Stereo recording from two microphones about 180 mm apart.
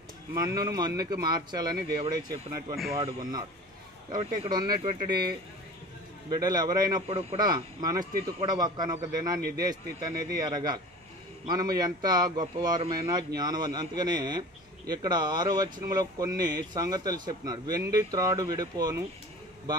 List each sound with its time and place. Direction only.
0.3 s speech: 20° right (ahead or behind)
4.2 s speech: 30° right (ahead or behind)
6.3 s speech: 20° right (ahead or behind)
7.1 s speech: 30° right (ahead or behind)